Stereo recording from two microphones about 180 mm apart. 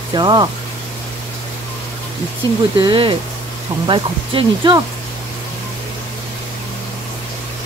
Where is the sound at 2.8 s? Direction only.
25° right (ahead or behind).